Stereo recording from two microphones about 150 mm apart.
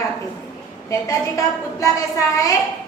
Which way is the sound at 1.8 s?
20° left (ahead or behind).